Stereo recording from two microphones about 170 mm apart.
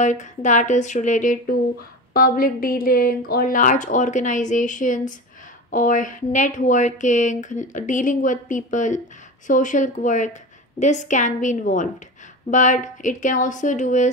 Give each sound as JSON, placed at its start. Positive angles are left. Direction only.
{"t": 0.0, "sound": "speech", "side_deg": 45}
{"t": 2.1, "sound": "speech", "side_deg": 60}